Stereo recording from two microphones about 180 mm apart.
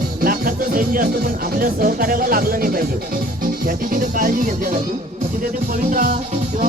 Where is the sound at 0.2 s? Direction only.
50° right (ahead or behind).